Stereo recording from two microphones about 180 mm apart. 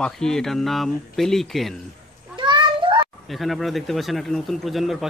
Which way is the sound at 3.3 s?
Centre (ahead or behind).